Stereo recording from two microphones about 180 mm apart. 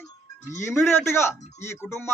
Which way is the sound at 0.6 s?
15° left (ahead or behind).